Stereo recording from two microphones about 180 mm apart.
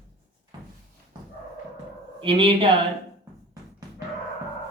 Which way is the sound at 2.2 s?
30° right (ahead or behind).